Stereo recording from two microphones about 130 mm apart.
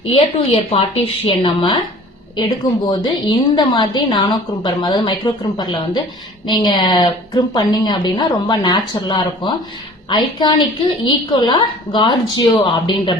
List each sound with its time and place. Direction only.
0.0 s a woman's voice: 50° left (ahead or behind)